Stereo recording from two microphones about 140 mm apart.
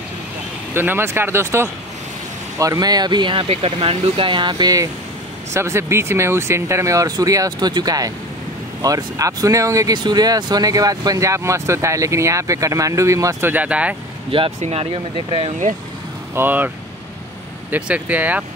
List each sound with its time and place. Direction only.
0.7 s speech: 15° right (ahead or behind)
14.6 s speech: 45° right (ahead or behind)
16.3 s speech: 15° right (ahead or behind)